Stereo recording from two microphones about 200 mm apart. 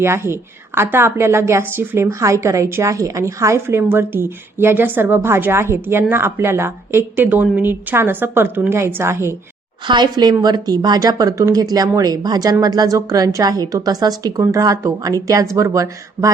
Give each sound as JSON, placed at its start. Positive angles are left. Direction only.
{"t": 0.0, "sound": "a woman's voice", "side_deg": -10}